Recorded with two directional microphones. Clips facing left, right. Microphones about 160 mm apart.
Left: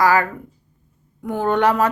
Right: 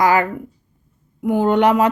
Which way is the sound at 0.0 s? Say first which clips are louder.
Right 1 dB; 20° right (ahead or behind).